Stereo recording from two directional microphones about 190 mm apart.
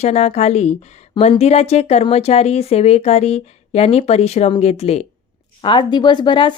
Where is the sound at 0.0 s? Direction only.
35° left (ahead or behind).